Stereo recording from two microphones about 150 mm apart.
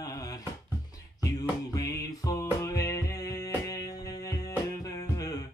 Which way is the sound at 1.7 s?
25° left (ahead or behind).